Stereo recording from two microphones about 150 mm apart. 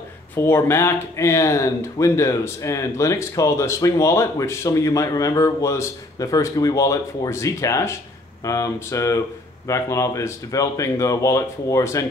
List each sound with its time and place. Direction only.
0.4 s speech: 15° left (ahead or behind)